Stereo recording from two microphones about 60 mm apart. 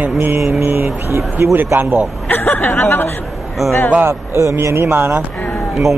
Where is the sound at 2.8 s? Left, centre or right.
Left.